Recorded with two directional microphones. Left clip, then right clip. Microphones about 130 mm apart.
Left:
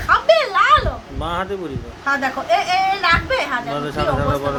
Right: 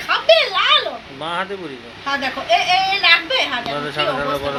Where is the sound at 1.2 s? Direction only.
30° left (ahead or behind).